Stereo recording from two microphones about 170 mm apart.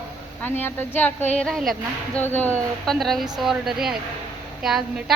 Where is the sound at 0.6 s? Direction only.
10° left (ahead or behind).